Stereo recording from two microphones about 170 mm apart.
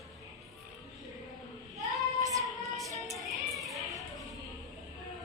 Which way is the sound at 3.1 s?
Centre (ahead or behind).